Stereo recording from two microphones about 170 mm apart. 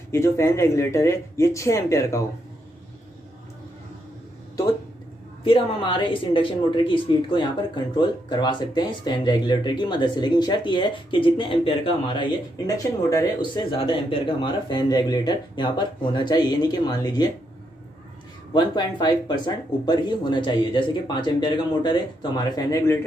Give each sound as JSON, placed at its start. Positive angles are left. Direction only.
{"t": 0.1, "sound": "speech", "side_deg": 15}
{"t": 5.4, "sound": "speech", "side_deg": 30}
{"t": 13.7, "sound": "speech", "side_deg": 30}
{"t": 18.5, "sound": "speech", "side_deg": 25}